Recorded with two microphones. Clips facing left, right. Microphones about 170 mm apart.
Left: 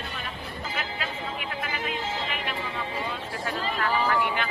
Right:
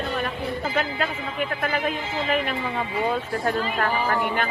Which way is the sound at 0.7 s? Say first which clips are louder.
Right 5 dB; 45° right (ahead or behind).